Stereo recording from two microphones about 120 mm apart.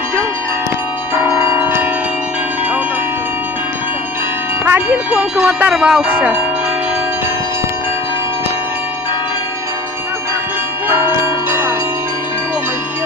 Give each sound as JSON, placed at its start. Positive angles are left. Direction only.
{"t": 1.2, "sound": "change ringing", "side_deg": -15}
{"t": 4.6, "sound": "wind chime", "side_deg": -15}